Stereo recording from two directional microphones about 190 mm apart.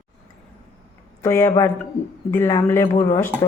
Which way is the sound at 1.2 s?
15° left (ahead or behind).